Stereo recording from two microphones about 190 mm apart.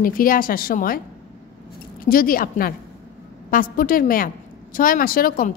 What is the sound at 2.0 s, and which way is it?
A woman's voice, 50° left (ahead or behind).